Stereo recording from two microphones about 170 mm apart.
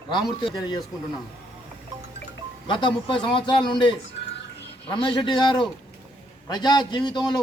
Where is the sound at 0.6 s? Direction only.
25° left (ahead or behind).